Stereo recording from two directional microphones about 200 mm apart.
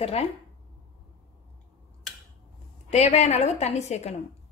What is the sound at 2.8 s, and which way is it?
A woman's voice, 35° left (ahead or behind).